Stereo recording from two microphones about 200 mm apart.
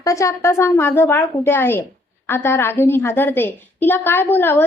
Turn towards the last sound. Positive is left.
turn(degrees=10)  # may be behind; listen again after turning